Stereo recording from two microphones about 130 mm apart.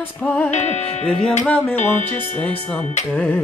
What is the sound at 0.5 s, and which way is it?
Music, 60° left (ahead or behind).